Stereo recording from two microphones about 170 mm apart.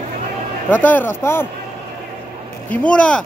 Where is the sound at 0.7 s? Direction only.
10° left (ahead or behind).